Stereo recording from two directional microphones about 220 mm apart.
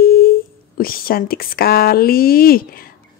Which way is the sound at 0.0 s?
40° left (ahead or behind).